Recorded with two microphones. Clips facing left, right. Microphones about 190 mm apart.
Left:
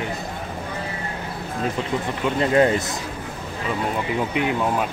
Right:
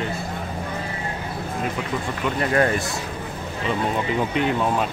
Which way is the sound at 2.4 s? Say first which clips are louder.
Left 3 dB; 20° left (ahead or behind).